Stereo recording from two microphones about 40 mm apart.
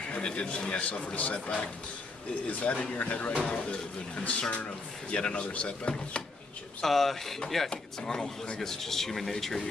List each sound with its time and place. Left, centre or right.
0.1 s a man's voice: left
2.4 s a man's voice: left
6.8 s a man's voice: centre